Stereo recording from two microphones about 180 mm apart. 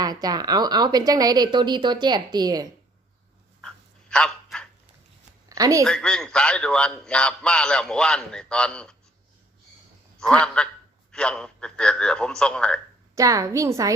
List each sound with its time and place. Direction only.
0.0 s speech: 20° right (ahead or behind)
4.1 s a sound: 5° left (ahead or behind)
5.5 s a sound: 20° right (ahead or behind)
5.8 s a man's voice: 5° left (ahead or behind)
10.2 s a man's voice: 5° left (ahead or behind)
13.1 s a woman's voice: 20° right (ahead or behind)